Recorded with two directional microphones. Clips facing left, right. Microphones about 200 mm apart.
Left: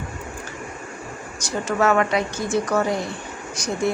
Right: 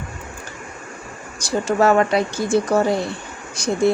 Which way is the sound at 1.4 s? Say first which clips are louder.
Right 4 dB; 30° right (ahead or behind).